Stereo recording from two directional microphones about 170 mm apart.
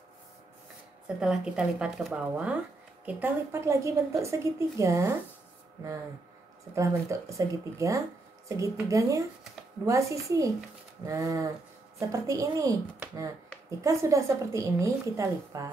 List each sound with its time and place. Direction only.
1.0 s speech: 5° right (ahead or behind)
6.7 s a woman's voice: 15° right (ahead or behind)